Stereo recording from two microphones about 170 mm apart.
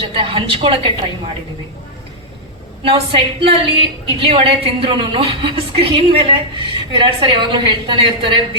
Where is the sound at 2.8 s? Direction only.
35° right (ahead or behind).